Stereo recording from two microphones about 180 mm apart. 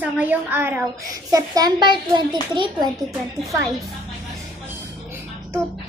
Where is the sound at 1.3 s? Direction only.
20° right (ahead or behind).